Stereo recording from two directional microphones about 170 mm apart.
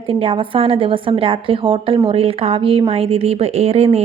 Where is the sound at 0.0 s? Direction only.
30° right (ahead or behind).